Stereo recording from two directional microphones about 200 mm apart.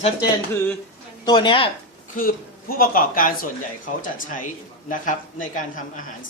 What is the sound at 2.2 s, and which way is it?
A man's voice, 45° left (ahead or behind).